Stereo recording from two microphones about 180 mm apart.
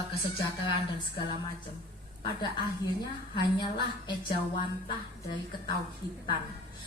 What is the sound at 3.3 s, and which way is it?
A woman's voice, 25° left (ahead or behind).